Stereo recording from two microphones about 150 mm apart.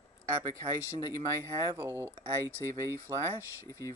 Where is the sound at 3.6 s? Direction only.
20° left (ahead or behind).